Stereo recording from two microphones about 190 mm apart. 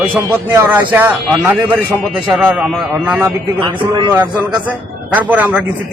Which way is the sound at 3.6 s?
25° right (ahead or behind).